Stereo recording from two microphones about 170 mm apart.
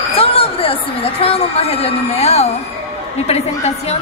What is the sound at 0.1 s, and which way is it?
A woman's voice, 35° left (ahead or behind).